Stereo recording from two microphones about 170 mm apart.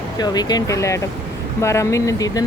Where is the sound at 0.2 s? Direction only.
25° left (ahead or behind).